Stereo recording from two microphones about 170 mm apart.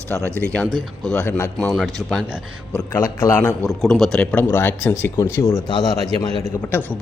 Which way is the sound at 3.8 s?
Centre (ahead or behind).